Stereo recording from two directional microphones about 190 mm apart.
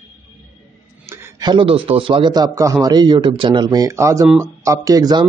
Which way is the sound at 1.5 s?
30° right (ahead or behind).